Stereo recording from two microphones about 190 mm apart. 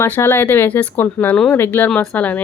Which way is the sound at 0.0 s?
15° left (ahead or behind).